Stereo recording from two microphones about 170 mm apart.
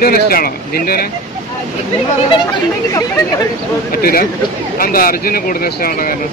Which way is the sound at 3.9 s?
60° left (ahead or behind).